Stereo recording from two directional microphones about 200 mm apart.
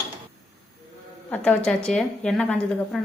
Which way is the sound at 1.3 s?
5° left (ahead or behind).